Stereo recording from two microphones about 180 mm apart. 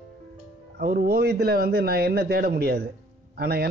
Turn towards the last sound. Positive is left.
turn(degrees=-60)  # may be behind; listen again after turning